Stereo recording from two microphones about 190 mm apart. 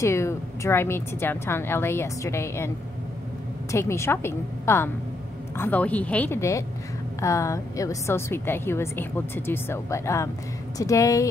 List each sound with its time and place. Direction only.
0.0 s a woman's voice: 15° left (ahead or behind)
3.7 s a woman's voice: 15° left (ahead or behind)